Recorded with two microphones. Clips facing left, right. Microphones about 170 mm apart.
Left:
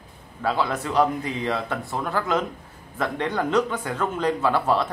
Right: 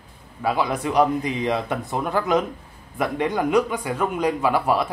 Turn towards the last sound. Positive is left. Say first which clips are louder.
# right 1 dB
turn(degrees=-10)  # may be behind; listen again after turning